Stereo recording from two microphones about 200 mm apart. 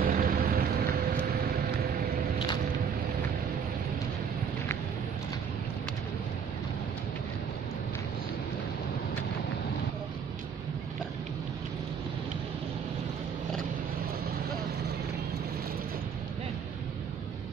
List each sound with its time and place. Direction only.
0.0 s vehicle: 45° right (ahead or behind)